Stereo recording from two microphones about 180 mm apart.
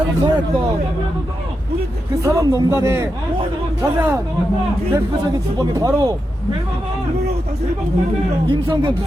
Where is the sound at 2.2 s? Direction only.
15° right (ahead or behind).